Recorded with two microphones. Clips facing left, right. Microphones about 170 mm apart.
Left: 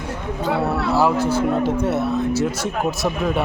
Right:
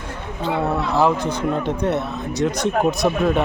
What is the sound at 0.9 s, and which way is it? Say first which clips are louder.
Speech: left 2 dB; 5° left (ahead or behind).